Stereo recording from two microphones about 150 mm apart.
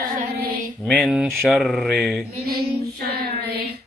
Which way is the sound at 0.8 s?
Centre (ahead or behind).